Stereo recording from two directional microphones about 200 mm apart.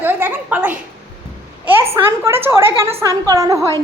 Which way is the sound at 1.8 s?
15° right (ahead or behind).